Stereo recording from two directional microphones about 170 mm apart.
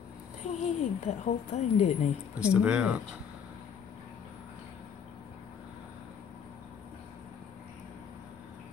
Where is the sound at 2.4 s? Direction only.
5° right (ahead or behind).